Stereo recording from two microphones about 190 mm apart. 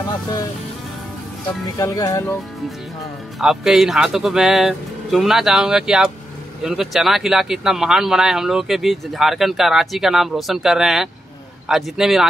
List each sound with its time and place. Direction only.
1.8 s speech: 20° left (ahead or behind)
3.3 s speech: centre (ahead or behind)